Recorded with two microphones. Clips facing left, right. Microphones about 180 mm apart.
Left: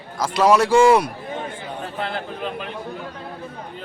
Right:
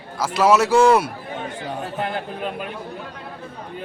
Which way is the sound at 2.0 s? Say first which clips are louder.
Even; 15° right (ahead or behind).